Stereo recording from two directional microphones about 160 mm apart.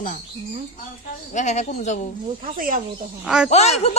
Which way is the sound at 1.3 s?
45° left (ahead or behind).